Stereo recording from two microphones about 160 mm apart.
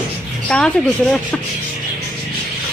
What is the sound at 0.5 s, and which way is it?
Speech, 5° left (ahead or behind).